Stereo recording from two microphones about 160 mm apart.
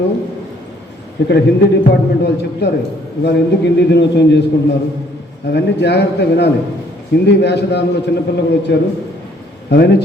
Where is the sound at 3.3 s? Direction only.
90° left.